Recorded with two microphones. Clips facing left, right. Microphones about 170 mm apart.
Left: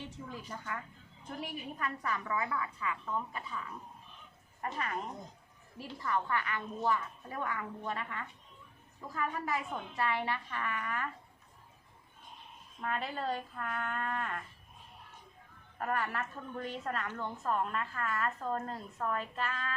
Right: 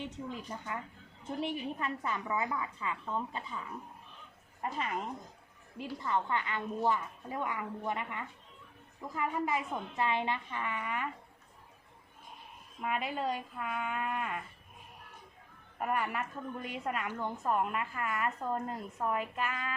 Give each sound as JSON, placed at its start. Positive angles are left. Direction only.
{"t": 0.0, "sound": "a woman's voice", "side_deg": -20}
{"t": 4.6, "sound": "a woman's voice", "side_deg": -20}
{"t": 12.8, "sound": "a woman's voice", "side_deg": -10}
{"t": 15.8, "sound": "a woman's voice", "side_deg": -10}